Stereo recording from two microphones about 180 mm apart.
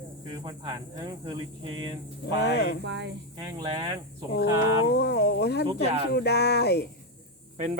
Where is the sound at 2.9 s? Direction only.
75° right (ahead or behind).